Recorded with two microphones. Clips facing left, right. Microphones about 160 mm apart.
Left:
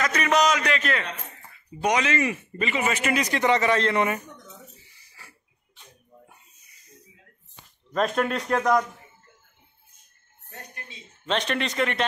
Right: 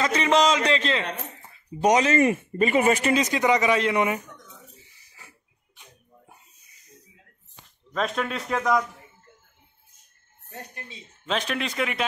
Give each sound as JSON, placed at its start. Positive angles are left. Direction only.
{"t": 0.0, "sound": "a sound", "side_deg": -25}
{"t": 1.8, "sound": "speech", "side_deg": -40}
{"t": 3.1, "sound": "speech", "side_deg": -20}
{"t": 7.9, "sound": "a man's voice", "side_deg": 0}
{"t": 11.2, "sound": "a man's voice", "side_deg": -5}